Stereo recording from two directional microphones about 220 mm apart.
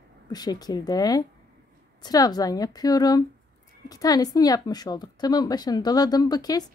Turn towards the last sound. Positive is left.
turn(degrees=15)  # may be behind; listen again after turning